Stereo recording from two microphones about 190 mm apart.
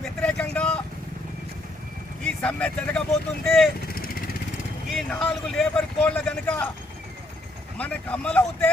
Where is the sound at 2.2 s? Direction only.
5° left (ahead or behind).